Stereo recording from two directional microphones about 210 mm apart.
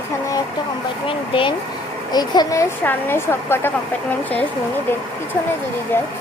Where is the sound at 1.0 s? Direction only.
25° left (ahead or behind).